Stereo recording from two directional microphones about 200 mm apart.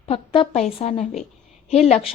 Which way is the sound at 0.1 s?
25° left (ahead or behind).